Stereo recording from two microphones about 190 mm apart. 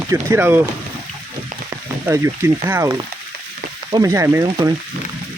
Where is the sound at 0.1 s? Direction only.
10° right (ahead or behind).